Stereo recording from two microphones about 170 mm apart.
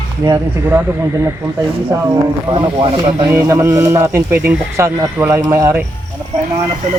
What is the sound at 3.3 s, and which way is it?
A man's voice, 15° right (ahead or behind).